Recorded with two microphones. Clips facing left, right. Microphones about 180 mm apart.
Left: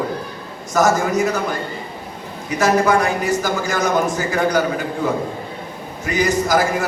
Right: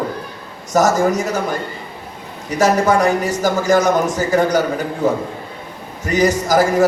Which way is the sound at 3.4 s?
45° right (ahead or behind).